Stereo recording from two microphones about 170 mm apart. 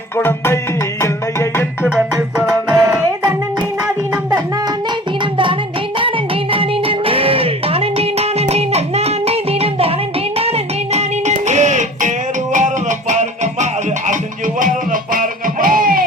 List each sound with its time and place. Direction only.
0.2 s music: 15° left (ahead or behind)
2.4 s music: 10° right (ahead or behind)
6.0 s music: 30° right (ahead or behind)
10.9 s music: 45° right (ahead or behind)